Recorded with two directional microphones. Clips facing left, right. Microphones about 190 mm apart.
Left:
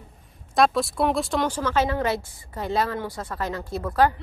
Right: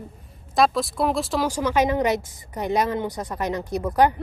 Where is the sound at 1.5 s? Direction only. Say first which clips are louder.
Right 3 dB; 15° right (ahead or behind).